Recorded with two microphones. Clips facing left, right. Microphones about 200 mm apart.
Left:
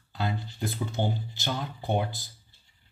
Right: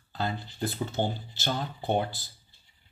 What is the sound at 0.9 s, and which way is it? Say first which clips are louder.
Speech: even; 15° left (ahead or behind).